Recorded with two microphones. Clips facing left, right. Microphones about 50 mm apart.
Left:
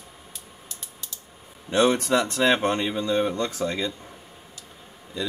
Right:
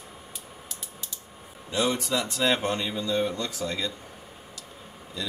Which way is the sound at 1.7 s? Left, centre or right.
Left.